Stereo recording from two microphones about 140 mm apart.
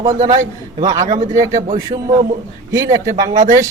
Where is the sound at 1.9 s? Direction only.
40° right (ahead or behind).